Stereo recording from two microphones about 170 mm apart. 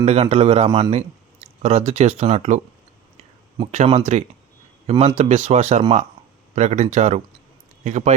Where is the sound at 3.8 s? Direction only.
40° right (ahead or behind).